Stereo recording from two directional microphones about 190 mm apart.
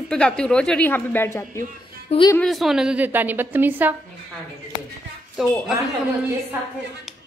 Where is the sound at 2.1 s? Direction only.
30° left (ahead or behind).